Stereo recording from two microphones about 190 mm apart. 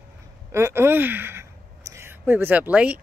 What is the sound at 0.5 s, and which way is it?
Speech, 15° right (ahead or behind).